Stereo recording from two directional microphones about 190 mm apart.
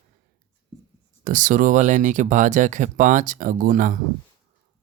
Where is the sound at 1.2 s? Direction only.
45° right (ahead or behind).